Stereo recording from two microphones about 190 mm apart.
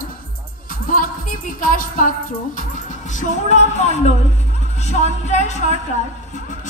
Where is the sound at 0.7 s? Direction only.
45° left (ahead or behind).